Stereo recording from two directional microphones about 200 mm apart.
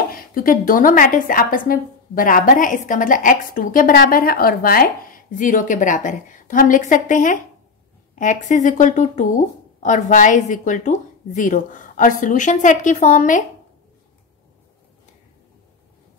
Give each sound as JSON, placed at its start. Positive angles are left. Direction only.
{"t": 0.1, "sound": "a woman's voice", "side_deg": 45}